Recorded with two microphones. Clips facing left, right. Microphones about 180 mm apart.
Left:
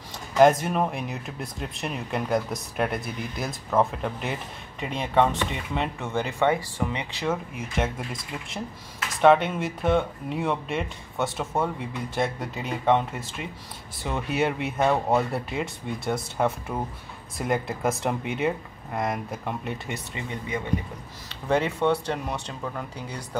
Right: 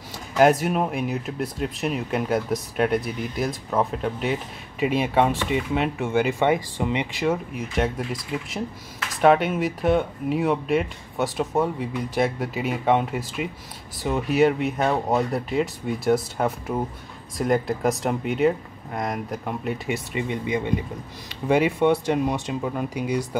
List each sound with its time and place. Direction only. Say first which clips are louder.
0.4 s speech: even; 5° right (ahead or behind)
7.5 s speech: right 4 dB; centre (ahead or behind)
20.2 s speech: right 3 dB; 15° right (ahead or behind)